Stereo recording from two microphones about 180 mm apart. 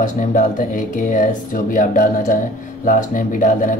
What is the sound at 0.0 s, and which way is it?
Speech, 45° left (ahead or behind).